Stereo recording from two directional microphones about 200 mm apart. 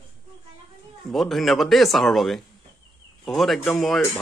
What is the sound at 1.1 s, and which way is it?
Speech, centre (ahead or behind).